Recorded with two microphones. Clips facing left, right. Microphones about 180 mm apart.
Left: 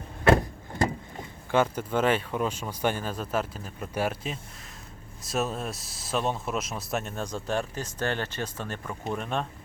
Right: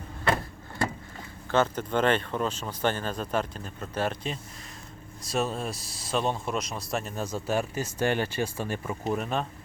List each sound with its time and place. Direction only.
1.5 s speech: 10° left (ahead or behind)